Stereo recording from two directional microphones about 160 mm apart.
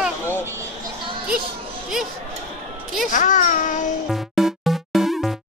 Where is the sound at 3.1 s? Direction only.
55° left (ahead or behind).